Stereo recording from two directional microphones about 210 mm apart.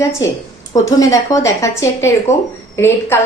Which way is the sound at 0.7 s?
15° left (ahead or behind).